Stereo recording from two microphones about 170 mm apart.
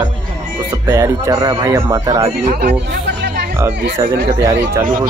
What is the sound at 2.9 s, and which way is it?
Chatter, 65° right (ahead or behind).